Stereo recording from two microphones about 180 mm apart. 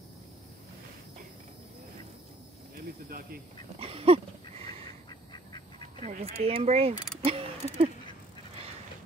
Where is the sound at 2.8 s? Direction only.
55° right (ahead or behind).